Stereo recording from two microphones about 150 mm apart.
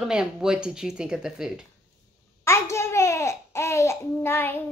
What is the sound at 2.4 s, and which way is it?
A child's voice, 20° left (ahead or behind).